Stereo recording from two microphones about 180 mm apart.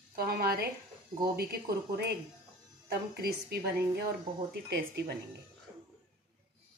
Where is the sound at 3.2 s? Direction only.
60° right (ahead or behind).